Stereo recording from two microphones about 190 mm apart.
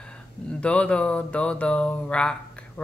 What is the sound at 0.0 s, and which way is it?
Speech, 5° left (ahead or behind).